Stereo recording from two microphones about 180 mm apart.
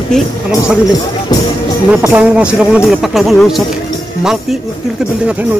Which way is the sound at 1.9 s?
5° right (ahead or behind).